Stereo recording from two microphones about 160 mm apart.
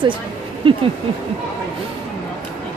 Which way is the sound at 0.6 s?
35° right (ahead or behind).